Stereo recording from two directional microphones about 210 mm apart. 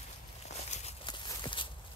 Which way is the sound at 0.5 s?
30° left (ahead or behind).